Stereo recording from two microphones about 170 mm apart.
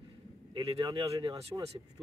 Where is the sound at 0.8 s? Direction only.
20° right (ahead or behind).